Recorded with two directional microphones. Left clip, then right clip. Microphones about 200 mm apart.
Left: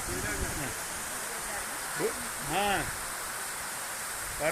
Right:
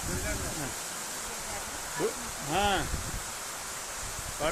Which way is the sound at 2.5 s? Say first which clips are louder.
Right 1 dB; 25° right (ahead or behind).